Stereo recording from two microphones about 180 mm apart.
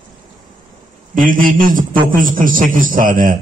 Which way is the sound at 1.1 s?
50° right (ahead or behind).